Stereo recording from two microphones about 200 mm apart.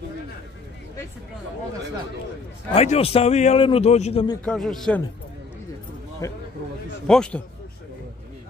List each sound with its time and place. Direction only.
2.7 s a man's voice: 30° left (ahead or behind)
4.5 s a man's voice: centre (ahead or behind)
6.2 s speech: 15° left (ahead or behind)
7.1 s a man's voice: 5° left (ahead or behind)